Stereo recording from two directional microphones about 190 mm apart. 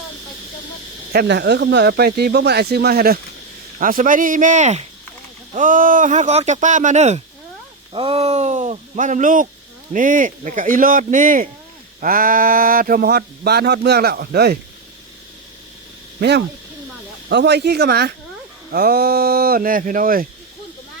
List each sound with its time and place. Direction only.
1.1 s speech: 55° right (ahead or behind)
17.2 s speech: 65° right (ahead or behind); by 20.2 s 50° right (ahead or behind)